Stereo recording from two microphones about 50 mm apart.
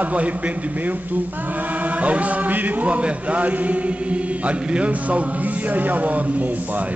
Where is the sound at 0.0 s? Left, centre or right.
Right.